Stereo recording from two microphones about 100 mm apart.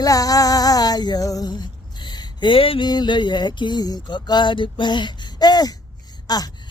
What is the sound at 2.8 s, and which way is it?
Speech, 45° left (ahead or behind).